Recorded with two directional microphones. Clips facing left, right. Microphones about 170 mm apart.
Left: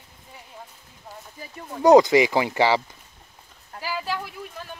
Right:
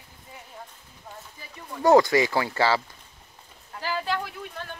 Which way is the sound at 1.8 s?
20° left (ahead or behind).